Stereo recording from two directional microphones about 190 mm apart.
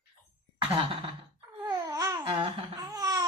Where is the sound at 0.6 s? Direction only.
30° right (ahead or behind).